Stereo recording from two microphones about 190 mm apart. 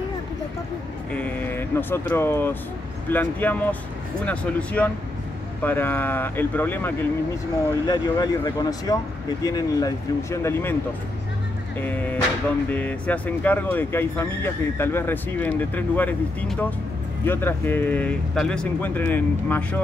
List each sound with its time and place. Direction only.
1.1 s speech: 10° left (ahead or behind)
11.8 s speech: 10° left (ahead or behind)